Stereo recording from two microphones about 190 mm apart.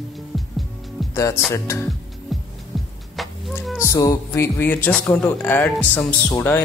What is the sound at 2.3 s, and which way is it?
Music, centre (ahead or behind).